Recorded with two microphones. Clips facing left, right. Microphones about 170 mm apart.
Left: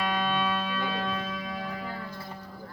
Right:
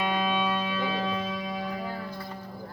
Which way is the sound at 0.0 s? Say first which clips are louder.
Right 1 dB; 5° right (ahead or behind).